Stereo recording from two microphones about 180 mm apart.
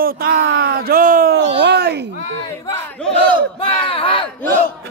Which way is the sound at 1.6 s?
70° right (ahead or behind).